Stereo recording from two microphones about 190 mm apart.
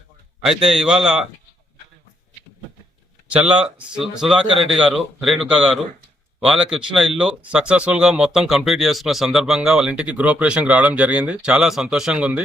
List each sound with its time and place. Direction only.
0.4 s speech: 5° right (ahead or behind)
3.2 s speech: 5° right (ahead or behind)
4.5 s speech: 30° right (ahead or behind)
4.8 s speech: centre (ahead or behind)